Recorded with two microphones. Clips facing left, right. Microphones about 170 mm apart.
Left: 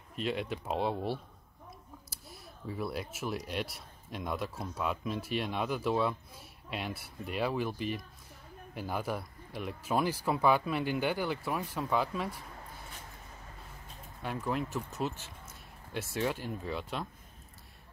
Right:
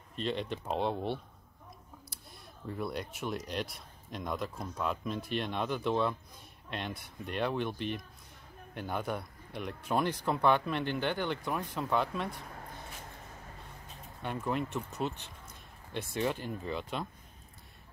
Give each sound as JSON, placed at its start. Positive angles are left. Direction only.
{"t": 0.1, "sound": "speech", "side_deg": 5}
{"t": 14.2, "sound": "speech", "side_deg": 0}